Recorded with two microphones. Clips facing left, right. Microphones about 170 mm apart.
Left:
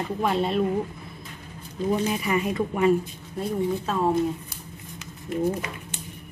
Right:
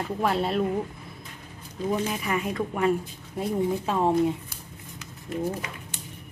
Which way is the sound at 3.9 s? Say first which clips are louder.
Right 1 dB; 20° right (ahead or behind).